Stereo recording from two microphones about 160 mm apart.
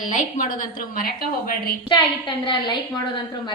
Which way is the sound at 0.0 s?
50° left (ahead or behind).